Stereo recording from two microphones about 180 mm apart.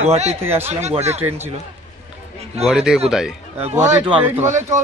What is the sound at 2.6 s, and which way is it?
Speech, centre (ahead or behind).